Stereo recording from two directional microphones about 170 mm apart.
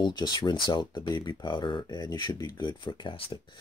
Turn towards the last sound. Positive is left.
turn(degrees=30)  # may be behind; listen again after turning